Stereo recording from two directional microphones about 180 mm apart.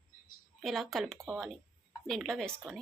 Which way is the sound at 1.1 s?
15° right (ahead or behind).